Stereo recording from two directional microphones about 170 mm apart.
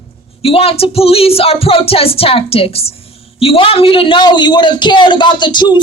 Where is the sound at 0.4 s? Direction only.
35° left (ahead or behind).